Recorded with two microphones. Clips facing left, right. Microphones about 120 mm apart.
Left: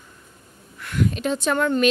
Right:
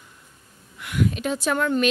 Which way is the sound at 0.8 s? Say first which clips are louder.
Left 1 dB; 5° right (ahead or behind).